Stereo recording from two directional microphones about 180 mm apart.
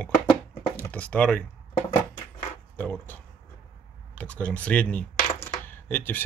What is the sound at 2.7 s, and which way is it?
Speech, 10° left (ahead or behind).